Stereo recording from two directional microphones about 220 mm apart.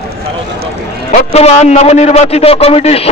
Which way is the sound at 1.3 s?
30° left (ahead or behind).